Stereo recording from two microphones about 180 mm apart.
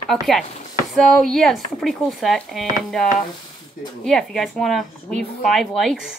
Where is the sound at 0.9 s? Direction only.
Centre (ahead or behind).